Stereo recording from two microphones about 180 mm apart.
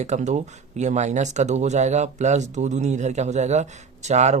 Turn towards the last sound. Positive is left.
turn(degrees=-40)  # may be behind; listen again after turning